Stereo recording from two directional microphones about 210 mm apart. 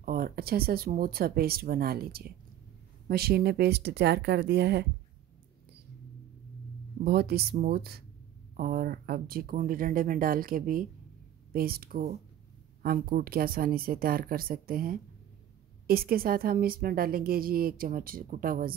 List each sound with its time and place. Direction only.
0.0 s a woman's voice: 45° right (ahead or behind)
7.1 s a woman's voice: 50° right (ahead or behind)